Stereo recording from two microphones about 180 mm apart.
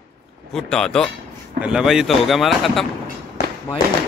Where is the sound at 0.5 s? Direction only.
5° left (ahead or behind).